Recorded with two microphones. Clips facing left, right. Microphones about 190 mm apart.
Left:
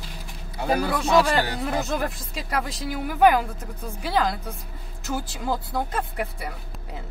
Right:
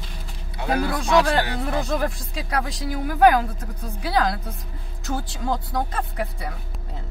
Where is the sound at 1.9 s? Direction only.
Centre (ahead or behind).